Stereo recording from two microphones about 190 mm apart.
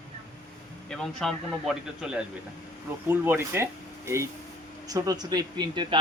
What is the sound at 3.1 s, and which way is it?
A man's voice, 10° right (ahead or behind).